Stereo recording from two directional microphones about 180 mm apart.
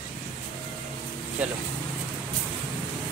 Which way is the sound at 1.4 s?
5° right (ahead or behind).